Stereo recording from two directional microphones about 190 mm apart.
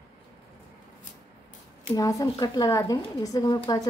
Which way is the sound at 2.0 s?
20° left (ahead or behind).